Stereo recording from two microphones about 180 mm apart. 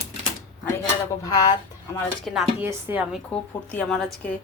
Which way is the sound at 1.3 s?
20° left (ahead or behind).